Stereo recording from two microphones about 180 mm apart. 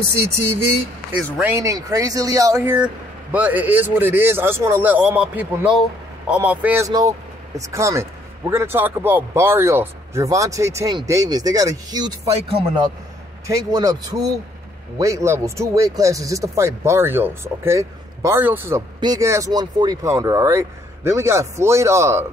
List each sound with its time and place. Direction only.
1.4 s speech: 15° right (ahead or behind)